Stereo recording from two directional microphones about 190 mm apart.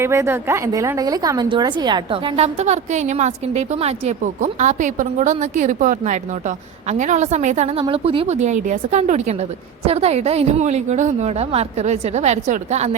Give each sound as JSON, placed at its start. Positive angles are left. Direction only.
{"t": 0.0, "sound": "a woman's voice", "side_deg": -15}